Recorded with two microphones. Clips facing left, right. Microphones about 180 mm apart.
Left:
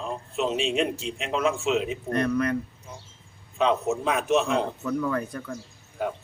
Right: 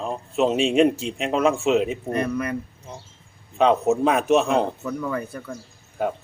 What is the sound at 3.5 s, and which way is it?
Speech, 50° right (ahead or behind).